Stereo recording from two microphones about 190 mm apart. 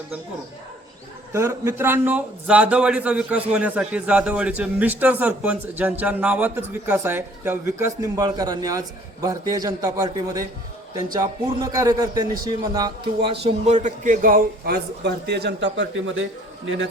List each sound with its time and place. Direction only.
1.3 s a man's voice: 15° right (ahead or behind)
13.4 s a man's voice: 35° right (ahead or behind); by 16.9 s 80° right